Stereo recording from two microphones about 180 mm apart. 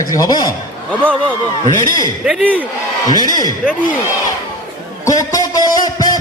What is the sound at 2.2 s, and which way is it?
Speech, 5° right (ahead or behind).